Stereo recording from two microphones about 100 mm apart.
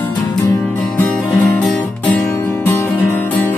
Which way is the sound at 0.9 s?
15° left (ahead or behind).